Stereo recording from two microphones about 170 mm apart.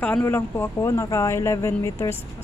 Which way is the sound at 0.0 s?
10° left (ahead or behind).